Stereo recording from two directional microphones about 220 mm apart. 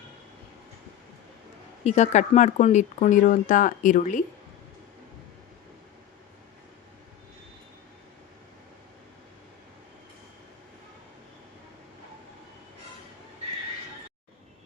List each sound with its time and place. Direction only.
1.8 s speech: 30° left (ahead or behind)